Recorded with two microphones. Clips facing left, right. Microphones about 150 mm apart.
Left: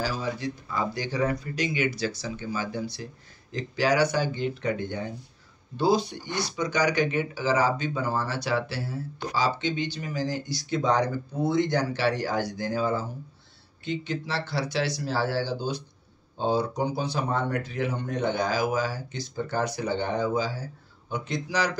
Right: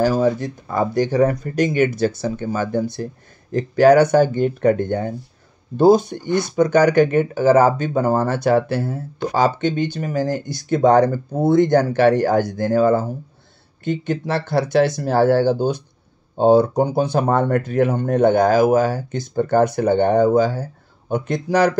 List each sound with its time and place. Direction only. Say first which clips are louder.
0.0 s speech: right 12 dB; 50° right (ahead or behind)